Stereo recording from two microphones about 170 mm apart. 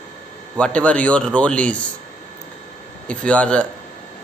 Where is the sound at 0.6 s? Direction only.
5° left (ahead or behind).